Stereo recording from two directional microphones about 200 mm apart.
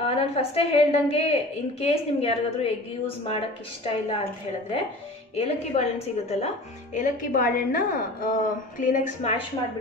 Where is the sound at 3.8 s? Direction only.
25° left (ahead or behind).